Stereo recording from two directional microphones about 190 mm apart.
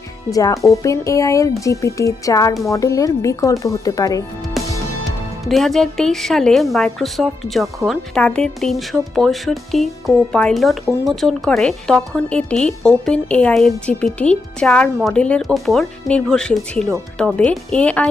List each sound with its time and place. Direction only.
0.3 s speech: 20° left (ahead or behind)
4.5 s music: centre (ahead or behind)
5.5 s speech: centre (ahead or behind)